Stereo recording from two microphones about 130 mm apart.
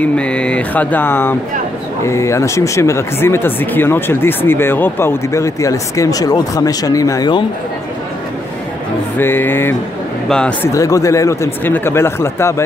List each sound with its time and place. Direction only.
0.0 s mantra: 10° left (ahead or behind)
2.0 s speech: 20° left (ahead or behind)
9.2 s mantra: 15° left (ahead or behind)
10.2 s a man's voice: 5° left (ahead or behind)
10.6 s speech: 25° left (ahead or behind)